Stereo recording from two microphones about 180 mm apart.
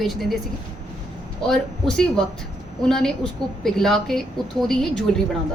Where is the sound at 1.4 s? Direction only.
5° left (ahead or behind).